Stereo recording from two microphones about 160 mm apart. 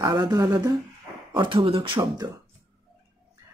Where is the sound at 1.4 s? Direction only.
35° right (ahead or behind).